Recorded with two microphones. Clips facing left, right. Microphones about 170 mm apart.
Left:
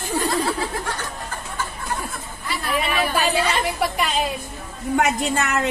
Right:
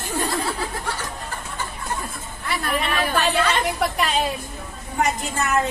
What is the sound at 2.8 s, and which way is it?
A woman's voice, 10° left (ahead or behind).